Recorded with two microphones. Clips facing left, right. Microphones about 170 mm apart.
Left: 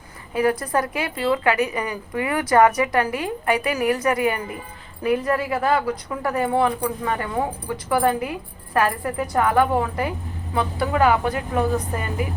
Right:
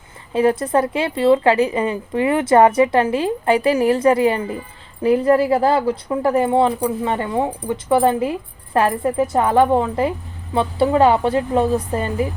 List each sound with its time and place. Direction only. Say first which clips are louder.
0.3 s speech: right 5 dB; 25° right (ahead or behind)